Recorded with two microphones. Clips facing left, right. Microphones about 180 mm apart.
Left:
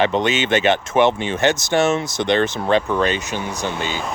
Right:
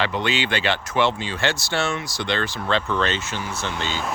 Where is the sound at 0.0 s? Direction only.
20° left (ahead or behind).